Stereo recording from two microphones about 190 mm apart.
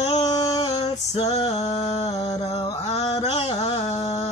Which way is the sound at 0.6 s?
20° left (ahead or behind).